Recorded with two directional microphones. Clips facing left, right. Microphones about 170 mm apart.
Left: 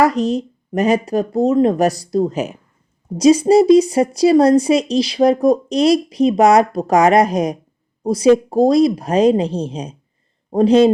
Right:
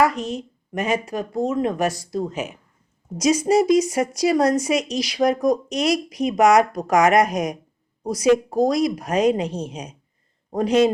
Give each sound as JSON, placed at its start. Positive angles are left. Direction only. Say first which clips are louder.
{"t": 0.0, "sound": "speech", "louder": "left 5 dB", "side_deg": 35}